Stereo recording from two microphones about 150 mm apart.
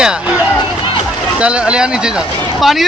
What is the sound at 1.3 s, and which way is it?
Speech, 5° right (ahead or behind).